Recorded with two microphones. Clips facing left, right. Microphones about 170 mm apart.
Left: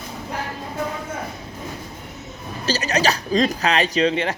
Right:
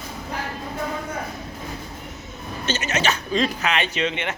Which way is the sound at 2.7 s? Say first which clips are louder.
Left 3 dB; 35° left (ahead or behind).